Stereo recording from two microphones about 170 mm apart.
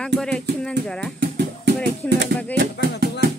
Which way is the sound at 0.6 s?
5° left (ahead or behind).